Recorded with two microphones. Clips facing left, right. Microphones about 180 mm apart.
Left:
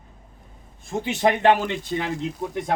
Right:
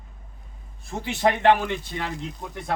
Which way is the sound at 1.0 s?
20° left (ahead or behind).